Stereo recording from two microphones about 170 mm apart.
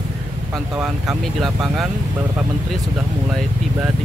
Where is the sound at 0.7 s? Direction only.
5° right (ahead or behind).